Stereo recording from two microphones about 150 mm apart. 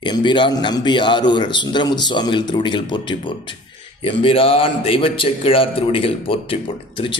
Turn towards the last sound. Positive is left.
turn(degrees=35)  # may be behind; listen again after turning